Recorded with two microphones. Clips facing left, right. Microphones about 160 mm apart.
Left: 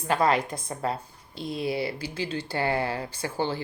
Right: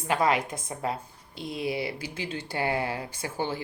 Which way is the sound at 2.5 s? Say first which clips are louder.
Left 1 dB; 20° right (ahead or behind).